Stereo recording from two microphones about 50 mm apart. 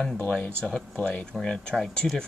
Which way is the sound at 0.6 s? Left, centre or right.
Centre.